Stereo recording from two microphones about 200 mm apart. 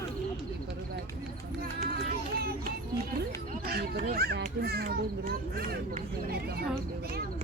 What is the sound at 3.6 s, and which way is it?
Children playing, 50° right (ahead or behind).